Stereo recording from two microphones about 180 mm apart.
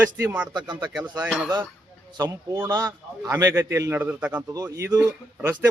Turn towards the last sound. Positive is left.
turn(degrees=-10)  # may be behind; listen again after turning